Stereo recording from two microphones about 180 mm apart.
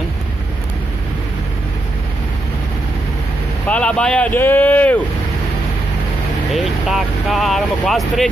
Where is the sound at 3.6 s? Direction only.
10° left (ahead or behind).